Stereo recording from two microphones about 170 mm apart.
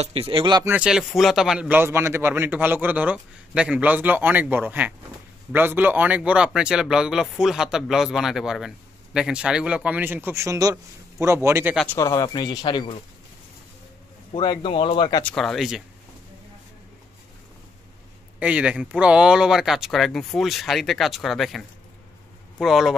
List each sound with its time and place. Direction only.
0.0 s speech: 35° right (ahead or behind)
0.7 s a man's voice: 5° right (ahead or behind)
11.9 s speech: 20° left (ahead or behind)
14.3 s speech: 25° left (ahead or behind)
15.2 s speech: 5° left (ahead or behind)
18.4 s speech: 5° right (ahead or behind)